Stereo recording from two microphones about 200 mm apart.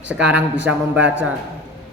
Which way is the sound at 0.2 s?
10° right (ahead or behind).